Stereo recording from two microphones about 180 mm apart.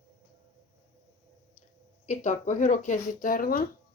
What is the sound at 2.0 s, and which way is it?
Speech, 45° left (ahead or behind).